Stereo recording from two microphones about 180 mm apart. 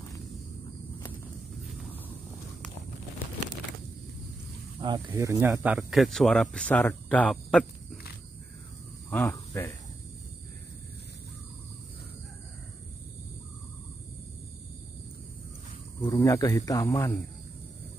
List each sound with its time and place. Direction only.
4.7 s snake: 25° right (ahead or behind)
5.0 s speech: 15° right (ahead or behind); by 8.0 s 5° left (ahead or behind)
9.1 s speech: 10° left (ahead or behind)
16.0 s speech: 15° left (ahead or behind)